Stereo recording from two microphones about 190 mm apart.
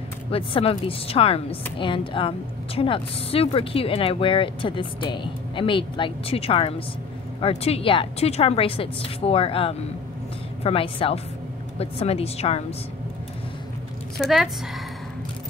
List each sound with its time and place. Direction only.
0.3 s a woman's voice: 30° left (ahead or behind)
14.1 s a woman's voice: centre (ahead or behind)